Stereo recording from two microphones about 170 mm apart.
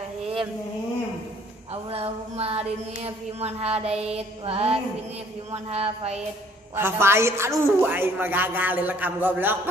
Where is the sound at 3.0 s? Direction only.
35° right (ahead or behind).